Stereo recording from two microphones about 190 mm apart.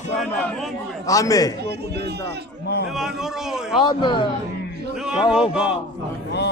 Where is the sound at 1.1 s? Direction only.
20° left (ahead or behind).